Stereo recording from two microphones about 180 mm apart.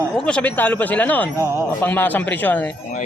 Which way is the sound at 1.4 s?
15° right (ahead or behind).